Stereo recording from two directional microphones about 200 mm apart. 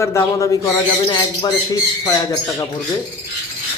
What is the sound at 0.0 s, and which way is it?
Speech, 15° left (ahead or behind).